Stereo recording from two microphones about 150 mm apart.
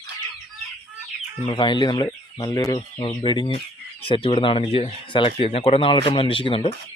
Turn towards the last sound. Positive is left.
turn(degrees=35)  # may be behind; listen again after turning